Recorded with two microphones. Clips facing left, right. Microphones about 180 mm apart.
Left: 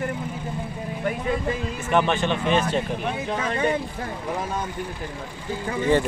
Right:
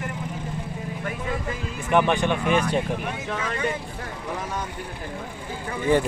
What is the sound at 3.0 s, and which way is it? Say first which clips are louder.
Speech: left 3 dB; 30° left (ahead or behind).